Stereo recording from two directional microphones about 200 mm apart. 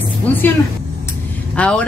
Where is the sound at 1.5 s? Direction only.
5° left (ahead or behind).